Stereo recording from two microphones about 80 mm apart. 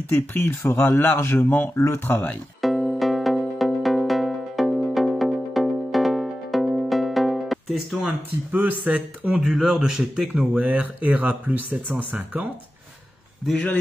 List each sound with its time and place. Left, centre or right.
0.1 s speech: left
1.8 s speech: left
2.6 s music: centre
7.9 s speech: centre
9.4 s speech: centre
13.4 s a man's voice: centre